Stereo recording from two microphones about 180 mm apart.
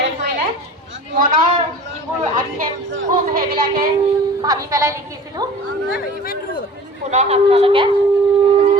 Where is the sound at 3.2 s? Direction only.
55° right (ahead or behind).